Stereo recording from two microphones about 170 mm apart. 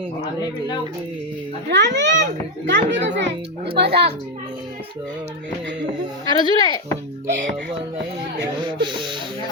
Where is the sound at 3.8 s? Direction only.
75° right (ahead or behind).